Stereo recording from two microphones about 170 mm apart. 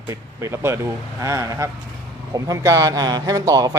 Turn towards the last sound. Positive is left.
turn(degrees=-20)  # may be behind; listen again after turning